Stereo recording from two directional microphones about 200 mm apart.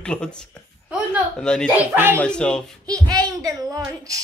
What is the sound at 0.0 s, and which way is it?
Speech, 5° left (ahead or behind).